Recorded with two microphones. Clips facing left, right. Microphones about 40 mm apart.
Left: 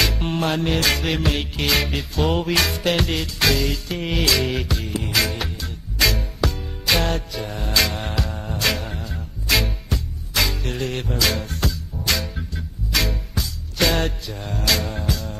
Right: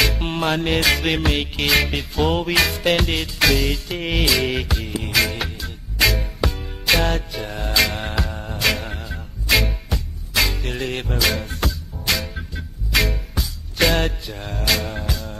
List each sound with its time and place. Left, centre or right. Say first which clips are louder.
0.0 s music: right 1 dB; centre
0.3 s music: right 1 dB; centre
11.1 s music: right 2 dB; centre